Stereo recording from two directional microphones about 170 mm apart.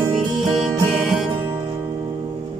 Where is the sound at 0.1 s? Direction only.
Centre (ahead or behind).